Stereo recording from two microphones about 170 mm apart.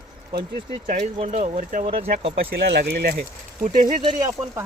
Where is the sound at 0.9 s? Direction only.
45° right (ahead or behind).